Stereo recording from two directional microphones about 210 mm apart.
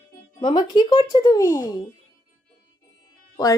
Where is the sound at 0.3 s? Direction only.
20° left (ahead or behind).